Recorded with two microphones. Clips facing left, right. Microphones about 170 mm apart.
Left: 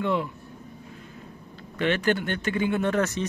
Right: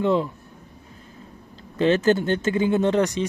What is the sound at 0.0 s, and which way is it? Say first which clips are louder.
Speech: right 5 dB; 30° right (ahead or behind).